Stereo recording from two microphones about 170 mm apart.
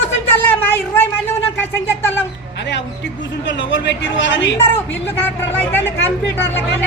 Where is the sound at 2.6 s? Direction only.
90° left.